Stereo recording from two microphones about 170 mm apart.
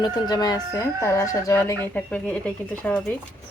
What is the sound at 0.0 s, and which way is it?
Speech, 25° left (ahead or behind).